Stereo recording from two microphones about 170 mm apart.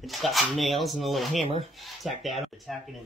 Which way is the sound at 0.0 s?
Centre (ahead or behind).